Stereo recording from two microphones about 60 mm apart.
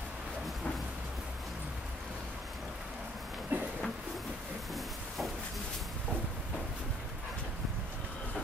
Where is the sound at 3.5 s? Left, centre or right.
Right.